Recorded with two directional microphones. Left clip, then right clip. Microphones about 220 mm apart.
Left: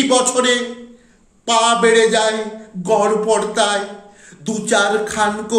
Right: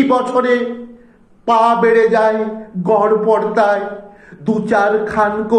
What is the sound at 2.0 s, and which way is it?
Speech, 15° left (ahead or behind).